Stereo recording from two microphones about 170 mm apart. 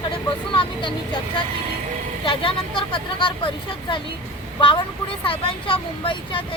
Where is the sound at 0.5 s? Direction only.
30° left (ahead or behind).